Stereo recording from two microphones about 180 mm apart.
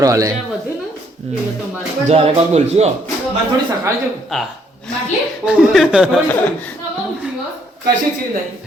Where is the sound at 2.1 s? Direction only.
35° right (ahead or behind).